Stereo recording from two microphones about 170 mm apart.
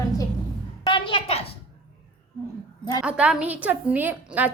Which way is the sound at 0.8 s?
30° left (ahead or behind).